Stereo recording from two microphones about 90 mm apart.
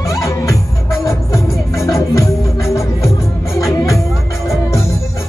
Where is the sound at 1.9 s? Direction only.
35° left (ahead or behind).